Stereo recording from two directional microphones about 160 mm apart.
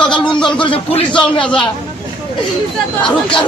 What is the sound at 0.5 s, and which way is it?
Speech, 30° left (ahead or behind).